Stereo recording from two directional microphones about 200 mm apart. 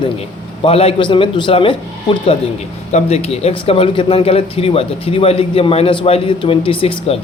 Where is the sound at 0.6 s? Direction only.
30° left (ahead or behind).